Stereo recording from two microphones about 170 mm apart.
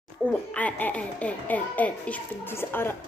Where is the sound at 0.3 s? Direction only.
5° left (ahead or behind).